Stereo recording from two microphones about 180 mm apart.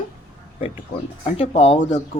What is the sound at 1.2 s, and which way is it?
Speech, 35° left (ahead or behind).